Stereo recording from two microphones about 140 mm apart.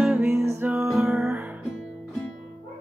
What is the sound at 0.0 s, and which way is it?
Music, 10° right (ahead or behind).